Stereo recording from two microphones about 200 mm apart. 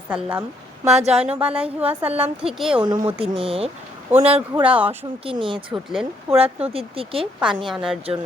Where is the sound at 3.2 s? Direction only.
25° right (ahead or behind).